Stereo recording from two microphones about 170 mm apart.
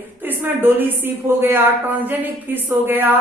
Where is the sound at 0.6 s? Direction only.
10° right (ahead or behind).